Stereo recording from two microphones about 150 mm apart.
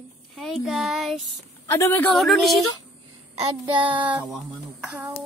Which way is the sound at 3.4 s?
30° right (ahead or behind).